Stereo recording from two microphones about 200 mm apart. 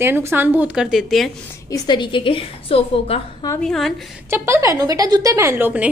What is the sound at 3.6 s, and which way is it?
Speech, centre (ahead or behind).